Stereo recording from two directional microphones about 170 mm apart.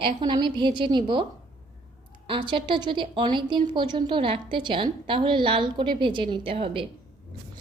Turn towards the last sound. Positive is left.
turn(degrees=-30)  # may be behind; listen again after turning